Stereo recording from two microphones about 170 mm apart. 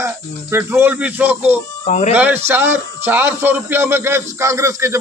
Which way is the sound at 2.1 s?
10° right (ahead or behind).